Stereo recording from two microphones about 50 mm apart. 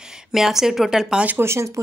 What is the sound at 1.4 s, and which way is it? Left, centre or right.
Speech, right.